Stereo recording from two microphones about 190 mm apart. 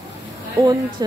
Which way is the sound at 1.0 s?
20° right (ahead or behind).